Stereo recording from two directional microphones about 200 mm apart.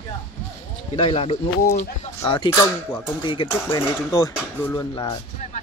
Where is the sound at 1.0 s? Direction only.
30° left (ahead or behind).